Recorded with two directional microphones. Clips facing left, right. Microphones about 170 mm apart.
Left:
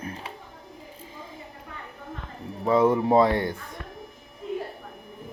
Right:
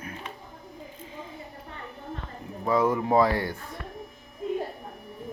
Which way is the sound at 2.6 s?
25° left (ahead or behind).